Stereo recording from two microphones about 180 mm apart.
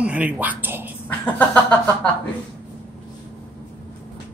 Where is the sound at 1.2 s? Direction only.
10° left (ahead or behind).